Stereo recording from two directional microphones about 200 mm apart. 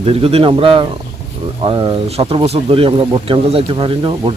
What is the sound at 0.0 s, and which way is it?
Speech, 30° right (ahead or behind).